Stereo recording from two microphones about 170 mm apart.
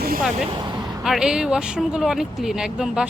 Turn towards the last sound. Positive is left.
turn(degrees=-5)  # may be behind; listen again after turning